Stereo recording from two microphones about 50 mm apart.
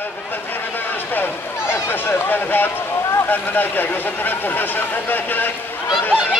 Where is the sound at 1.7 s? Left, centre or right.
Left.